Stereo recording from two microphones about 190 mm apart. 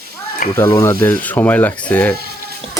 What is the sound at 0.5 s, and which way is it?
Speech, 15° left (ahead or behind).